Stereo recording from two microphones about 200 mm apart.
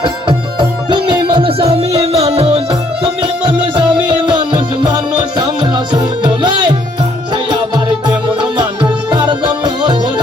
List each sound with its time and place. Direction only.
0.0 s music: 25° right (ahead or behind)